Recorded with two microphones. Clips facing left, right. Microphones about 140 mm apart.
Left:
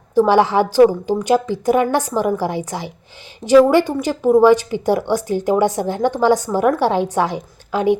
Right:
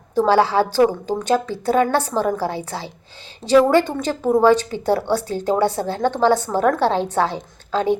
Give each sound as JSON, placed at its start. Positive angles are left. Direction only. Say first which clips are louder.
{"t": 0.3, "sound": "a woman's voice", "louder": "right 2 dB", "side_deg": 15}